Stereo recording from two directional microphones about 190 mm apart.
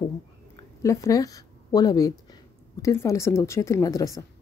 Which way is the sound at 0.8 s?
15° left (ahead or behind).